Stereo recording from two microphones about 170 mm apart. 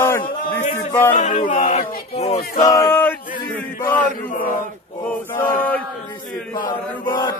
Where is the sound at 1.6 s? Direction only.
40° left (ahead or behind).